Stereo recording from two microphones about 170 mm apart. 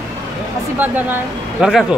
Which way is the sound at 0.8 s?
10° right (ahead or behind).